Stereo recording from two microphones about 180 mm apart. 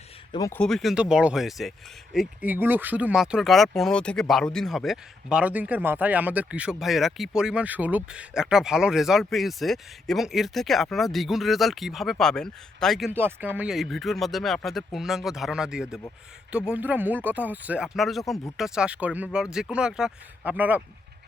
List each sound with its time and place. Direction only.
0.3 s speech: 20° left (ahead or behind)
0.6 s speech: centre (ahead or behind)
13.1 s speech: 10° right (ahead or behind)